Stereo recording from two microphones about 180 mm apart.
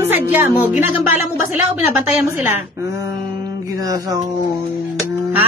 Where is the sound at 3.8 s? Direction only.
20° right (ahead or behind).